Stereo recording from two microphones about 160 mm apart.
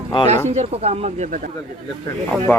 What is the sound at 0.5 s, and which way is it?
Speech, 40° right (ahead or behind).